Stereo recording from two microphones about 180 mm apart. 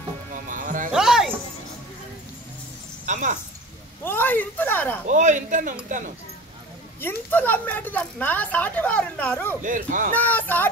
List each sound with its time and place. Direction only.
0.3 s music: 45° right (ahead or behind)
0.9 s music: 5° right (ahead or behind)
3.1 s speech: 45° right (ahead or behind)
4.0 s a woman's voice: 10° left (ahead or behind)
5.0 s speech: 45° right (ahead or behind)
7.0 s a woman's voice: 10° left (ahead or behind)
9.6 s speech: 45° right (ahead or behind)
10.1 s a woman's voice: 10° left (ahead or behind)